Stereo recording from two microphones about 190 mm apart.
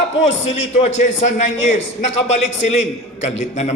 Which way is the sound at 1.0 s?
35° left (ahead or behind).